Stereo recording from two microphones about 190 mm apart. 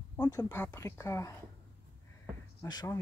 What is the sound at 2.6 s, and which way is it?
Speech, 20° left (ahead or behind).